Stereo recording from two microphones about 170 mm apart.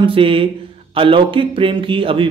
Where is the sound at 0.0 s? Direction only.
30° right (ahead or behind).